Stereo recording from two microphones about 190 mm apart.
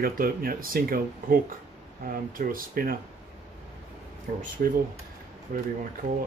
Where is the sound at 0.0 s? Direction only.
50° right (ahead or behind).